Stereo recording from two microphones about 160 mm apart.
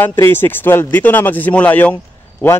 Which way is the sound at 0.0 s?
15° left (ahead or behind).